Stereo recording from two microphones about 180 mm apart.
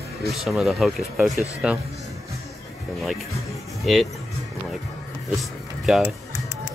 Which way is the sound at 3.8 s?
Centre (ahead or behind).